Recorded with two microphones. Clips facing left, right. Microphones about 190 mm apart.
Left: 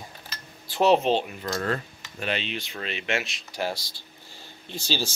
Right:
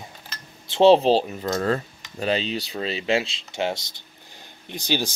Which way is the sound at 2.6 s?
35° right (ahead or behind).